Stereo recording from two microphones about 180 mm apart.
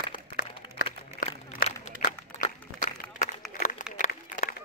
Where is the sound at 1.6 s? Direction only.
45° left (ahead or behind).